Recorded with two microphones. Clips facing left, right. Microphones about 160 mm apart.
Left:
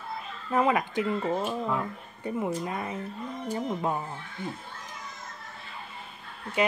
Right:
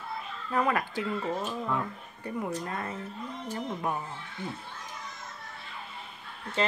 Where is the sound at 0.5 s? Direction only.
20° left (ahead or behind).